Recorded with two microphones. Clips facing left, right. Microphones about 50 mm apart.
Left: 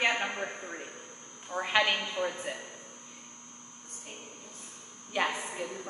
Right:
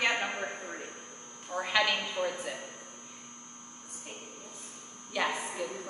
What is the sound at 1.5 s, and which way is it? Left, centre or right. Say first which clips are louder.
Speech: left 1 dB; left.